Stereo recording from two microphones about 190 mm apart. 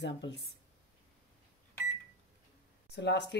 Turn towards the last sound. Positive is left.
turn(degrees=65)  # may be behind; listen again after turning